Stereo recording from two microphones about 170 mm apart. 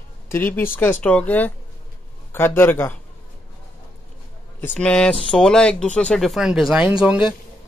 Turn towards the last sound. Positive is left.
turn(degrees=-5)  # may be behind; listen again after turning